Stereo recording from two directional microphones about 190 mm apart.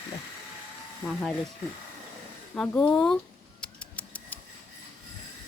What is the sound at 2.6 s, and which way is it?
Speech, 5° left (ahead or behind).